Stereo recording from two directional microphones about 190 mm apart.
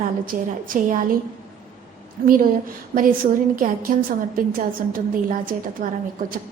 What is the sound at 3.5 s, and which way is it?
A woman's voice, 45° right (ahead or behind).